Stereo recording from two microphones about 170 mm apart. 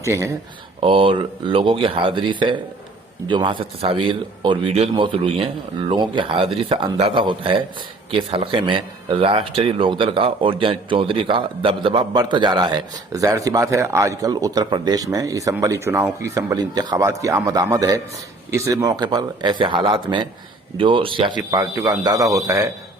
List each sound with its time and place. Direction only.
0.0 s speech: 15° right (ahead or behind)
0.8 s a man's voice: 30° right (ahead or behind)
21.5 s a man's voice: 20° right (ahead or behind)